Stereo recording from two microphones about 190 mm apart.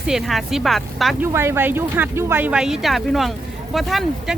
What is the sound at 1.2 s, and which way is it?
Speech, 15° right (ahead or behind).